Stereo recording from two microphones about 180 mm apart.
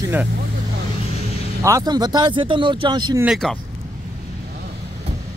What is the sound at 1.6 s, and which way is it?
Speech, 20° right (ahead or behind).